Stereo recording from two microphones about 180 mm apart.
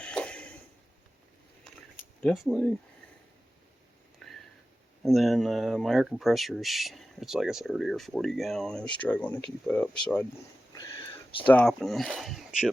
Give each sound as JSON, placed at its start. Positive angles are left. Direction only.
{"t": 0.0, "sound": "a sound", "side_deg": 5}
{"t": 2.2, "sound": "speech", "side_deg": 0}
{"t": 4.2, "sound": "a sound", "side_deg": 0}
{"t": 5.0, "sound": "speech", "side_deg": 0}
{"t": 10.8, "sound": "whispering", "side_deg": 25}
{"t": 11.4, "sound": "speech", "side_deg": 5}